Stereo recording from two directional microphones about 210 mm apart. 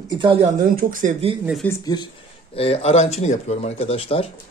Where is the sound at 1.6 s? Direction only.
15° left (ahead or behind).